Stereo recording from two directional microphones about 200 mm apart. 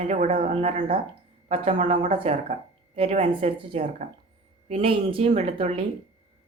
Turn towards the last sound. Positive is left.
turn(degrees=-30)  # may be behind; listen again after turning